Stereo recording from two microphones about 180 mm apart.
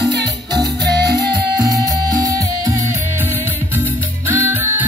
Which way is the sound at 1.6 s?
20° right (ahead or behind).